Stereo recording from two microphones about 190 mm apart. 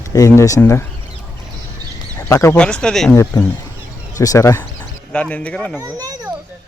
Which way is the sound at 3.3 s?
20° left (ahead or behind).